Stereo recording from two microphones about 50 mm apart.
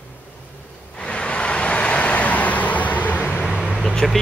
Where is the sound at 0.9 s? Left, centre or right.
Left.